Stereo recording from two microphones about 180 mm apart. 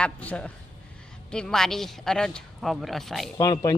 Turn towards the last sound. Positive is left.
turn(degrees=20)  # may be behind; listen again after turning